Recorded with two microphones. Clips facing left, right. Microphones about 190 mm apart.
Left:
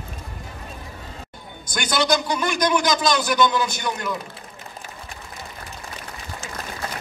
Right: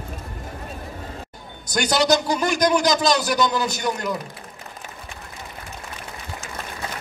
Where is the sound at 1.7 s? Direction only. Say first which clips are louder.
Right 3 dB; 40° right (ahead or behind).